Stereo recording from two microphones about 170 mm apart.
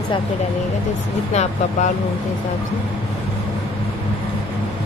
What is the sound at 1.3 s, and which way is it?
Speech, 40° left (ahead or behind).